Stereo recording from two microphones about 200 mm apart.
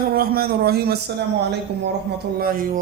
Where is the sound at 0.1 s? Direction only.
50° right (ahead or behind).